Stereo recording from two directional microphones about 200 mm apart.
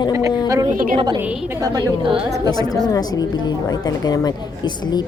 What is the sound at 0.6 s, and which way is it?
Speech, 45° right (ahead or behind).